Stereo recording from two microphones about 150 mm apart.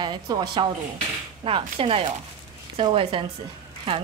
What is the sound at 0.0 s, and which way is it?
A woman's voice, 30° right (ahead or behind).